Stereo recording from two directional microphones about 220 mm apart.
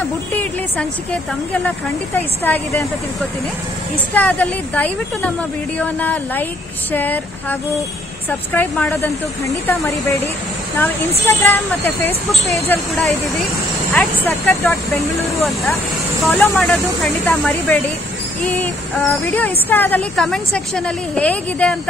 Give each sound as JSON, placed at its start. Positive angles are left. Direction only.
{"t": 0.4, "sound": "a woman's voice", "side_deg": 5}
{"t": 4.1, "sound": "speech", "side_deg": 5}
{"t": 11.2, "sound": "speech", "side_deg": 10}
{"t": 16.3, "sound": "a woman's voice", "side_deg": 5}